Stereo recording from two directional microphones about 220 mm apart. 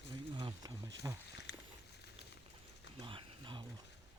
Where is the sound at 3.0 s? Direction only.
20° right (ahead or behind).